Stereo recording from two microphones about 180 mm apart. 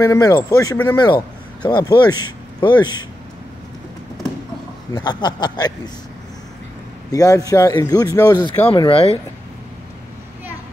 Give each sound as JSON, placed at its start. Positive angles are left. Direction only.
{"t": 0.0, "sound": "a man's voice", "side_deg": 20}
{"t": 4.9, "sound": "a man's voice", "side_deg": 25}
{"t": 7.1, "sound": "a man's voice", "side_deg": 20}
{"t": 8.7, "sound": "speech", "side_deg": 30}